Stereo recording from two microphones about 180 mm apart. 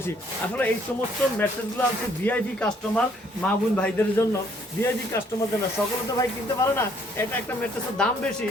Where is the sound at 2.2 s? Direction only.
5° left (ahead or behind).